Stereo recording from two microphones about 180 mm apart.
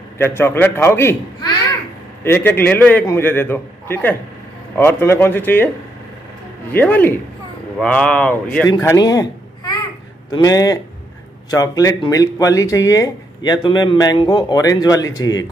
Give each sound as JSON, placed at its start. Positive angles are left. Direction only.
{"t": 0.2, "sound": "a man's voice", "side_deg": 15}
{"t": 1.4, "sound": "speech", "side_deg": 25}
{"t": 2.2, "sound": "a man's voice", "side_deg": 10}
{"t": 6.7, "sound": "a man's voice", "side_deg": 10}
{"t": 8.6, "sound": "speech", "side_deg": 20}